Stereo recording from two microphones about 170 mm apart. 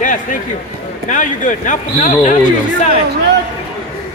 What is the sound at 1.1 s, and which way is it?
Speech, 50° left (ahead or behind).